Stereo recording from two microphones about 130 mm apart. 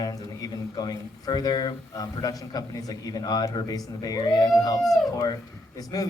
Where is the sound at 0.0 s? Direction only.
30° left (ahead or behind).